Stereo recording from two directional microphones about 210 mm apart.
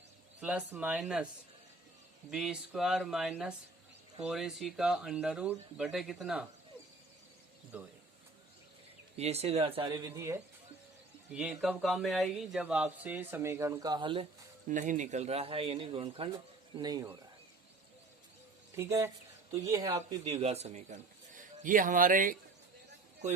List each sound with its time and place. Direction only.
0.3 s speech: 5° right (ahead or behind)
2.3 s speech: centre (ahead or behind)
7.7 s speech: 5° right (ahead or behind)
9.1 s speech: 30° right (ahead or behind); by 10.3 s 15° right (ahead or behind)
11.3 s speech: 5° right (ahead or behind); by 14.3 s 25° right (ahead or behind)
14.7 s speech: 35° right (ahead or behind); by 17.2 s 15° right (ahead or behind)
18.8 s speech: 15° right (ahead or behind)
20.2 s a man's voice: 30° right (ahead or behind)